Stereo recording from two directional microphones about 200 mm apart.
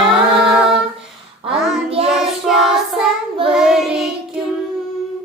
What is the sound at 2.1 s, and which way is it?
Child singing, centre (ahead or behind).